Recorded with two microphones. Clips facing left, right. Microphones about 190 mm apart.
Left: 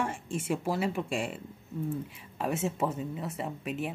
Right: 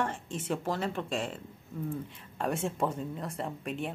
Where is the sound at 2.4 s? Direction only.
5° left (ahead or behind).